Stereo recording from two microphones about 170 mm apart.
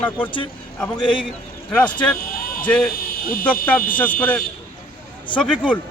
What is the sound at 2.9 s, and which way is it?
Speech, 60° left (ahead or behind).